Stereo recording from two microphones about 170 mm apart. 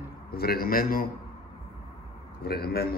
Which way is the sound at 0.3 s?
65° left (ahead or behind).